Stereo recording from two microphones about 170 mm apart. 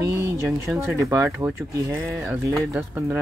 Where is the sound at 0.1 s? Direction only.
15° right (ahead or behind).